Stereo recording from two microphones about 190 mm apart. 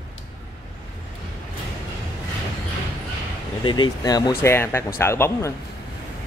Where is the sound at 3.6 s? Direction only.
25° left (ahead or behind).